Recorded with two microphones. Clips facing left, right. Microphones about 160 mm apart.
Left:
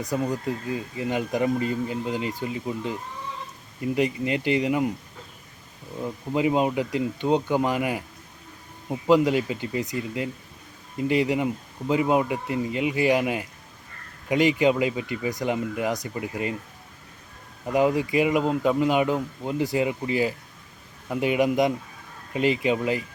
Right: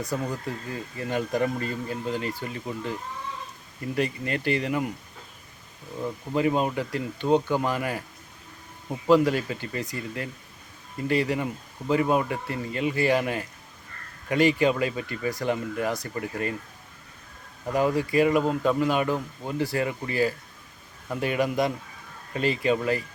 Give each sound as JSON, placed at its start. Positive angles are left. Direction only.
{"t": 0.0, "sound": "speech", "side_deg": 15}
{"t": 6.3, "sound": "speech", "side_deg": 15}
{"t": 9.0, "sound": "speech", "side_deg": 15}
{"t": 17.7, "sound": "speech", "side_deg": 15}